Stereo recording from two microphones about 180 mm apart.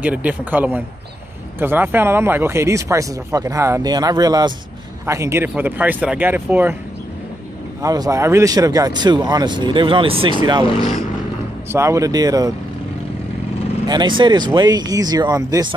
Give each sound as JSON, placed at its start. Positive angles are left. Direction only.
{"t": 0.0, "sound": "speech", "side_deg": -10}
{"t": 7.8, "sound": "speech", "side_deg": -20}
{"t": 11.7, "sound": "speech", "side_deg": -15}
{"t": 13.8, "sound": "speech", "side_deg": -25}